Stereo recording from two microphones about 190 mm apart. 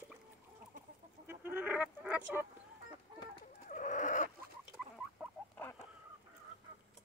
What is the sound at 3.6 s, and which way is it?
Chicken, 40° left (ahead or behind).